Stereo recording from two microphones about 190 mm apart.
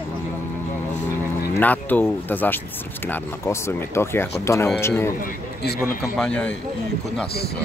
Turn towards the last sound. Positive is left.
turn(degrees=5)  # may be behind; listen again after turning